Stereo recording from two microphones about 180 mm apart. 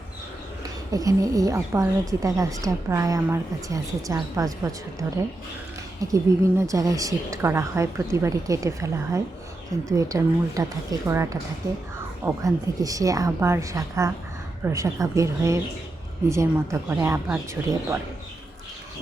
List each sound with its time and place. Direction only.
0.9 s a woman's voice: 20° right (ahead or behind)